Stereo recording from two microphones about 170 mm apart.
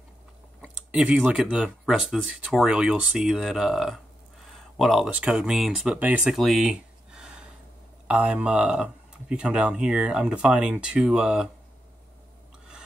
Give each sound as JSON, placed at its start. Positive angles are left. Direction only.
{"t": 0.6, "sound": "speech", "side_deg": -5}